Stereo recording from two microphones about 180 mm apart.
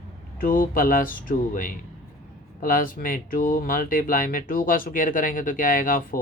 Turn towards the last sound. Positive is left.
turn(degrees=50)  # may be behind; listen again after turning